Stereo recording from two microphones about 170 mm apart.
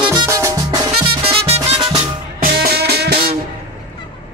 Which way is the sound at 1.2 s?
35° right (ahead or behind).